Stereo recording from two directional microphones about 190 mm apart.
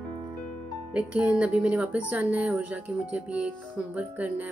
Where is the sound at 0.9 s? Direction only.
5° right (ahead or behind).